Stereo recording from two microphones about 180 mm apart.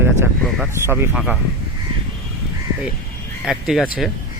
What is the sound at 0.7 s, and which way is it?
Speech, 15° right (ahead or behind).